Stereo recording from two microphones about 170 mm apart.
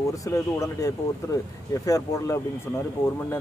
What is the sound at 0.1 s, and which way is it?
Speech, 20° left (ahead or behind).